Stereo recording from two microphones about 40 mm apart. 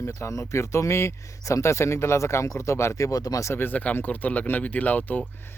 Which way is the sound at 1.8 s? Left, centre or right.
Left.